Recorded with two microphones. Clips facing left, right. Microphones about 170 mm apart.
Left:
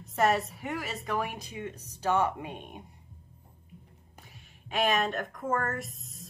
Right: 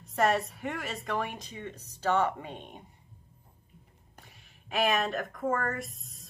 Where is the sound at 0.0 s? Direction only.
Centre (ahead or behind).